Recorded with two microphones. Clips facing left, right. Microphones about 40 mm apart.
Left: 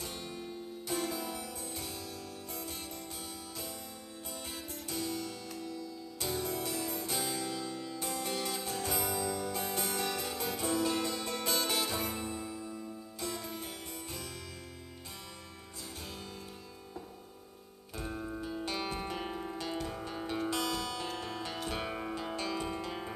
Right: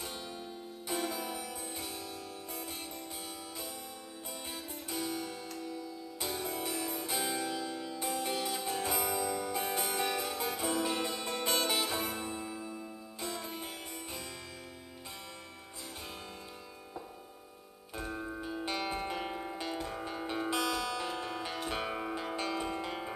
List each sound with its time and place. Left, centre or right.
0.0 s music: centre
4.8 s music: centre
17.9 s music: centre